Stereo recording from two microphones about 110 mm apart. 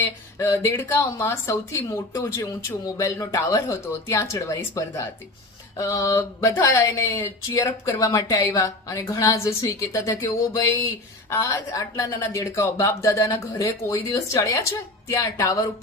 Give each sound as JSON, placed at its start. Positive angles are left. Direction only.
{"t": 0.3, "sound": "speech", "side_deg": 25}